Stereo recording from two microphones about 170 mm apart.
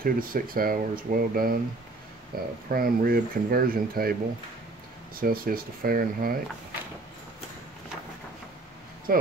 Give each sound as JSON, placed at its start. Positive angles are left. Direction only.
{"t": 0.0, "sound": "speech", "side_deg": -55}
{"t": 9.1, "sound": "speech", "side_deg": -55}